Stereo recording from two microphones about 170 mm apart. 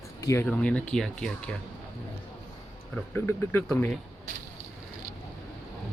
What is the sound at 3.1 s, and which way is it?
Speech, 10° left (ahead or behind).